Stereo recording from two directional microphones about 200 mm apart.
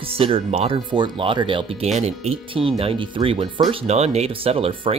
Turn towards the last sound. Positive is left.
turn(degrees=-25)  # may be behind; listen again after turning